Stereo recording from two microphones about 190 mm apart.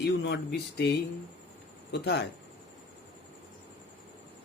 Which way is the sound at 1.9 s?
65° left (ahead or behind).